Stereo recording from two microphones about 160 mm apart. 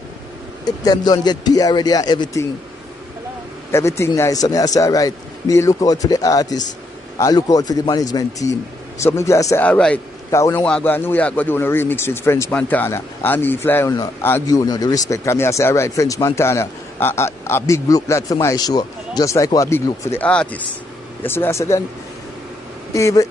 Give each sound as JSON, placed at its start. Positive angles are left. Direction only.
{"t": 0.7, "sound": "speech", "side_deg": 25}
{"t": 3.7, "sound": "speech", "side_deg": 15}
{"t": 9.7, "sound": "a man's voice", "side_deg": 5}
{"t": 10.3, "sound": "speech", "side_deg": 20}
{"t": 22.9, "sound": "speech", "side_deg": 20}